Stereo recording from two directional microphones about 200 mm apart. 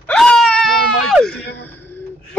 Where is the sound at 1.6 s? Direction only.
10° left (ahead or behind).